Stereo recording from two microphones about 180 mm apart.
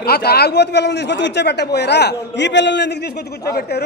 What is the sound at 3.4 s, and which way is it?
Speech, 60° left (ahead or behind).